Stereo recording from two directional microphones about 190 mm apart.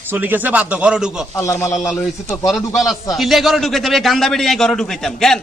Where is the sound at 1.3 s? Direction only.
15° left (ahead or behind).